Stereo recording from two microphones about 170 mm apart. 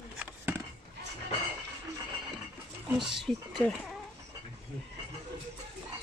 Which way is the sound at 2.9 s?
Centre (ahead or behind).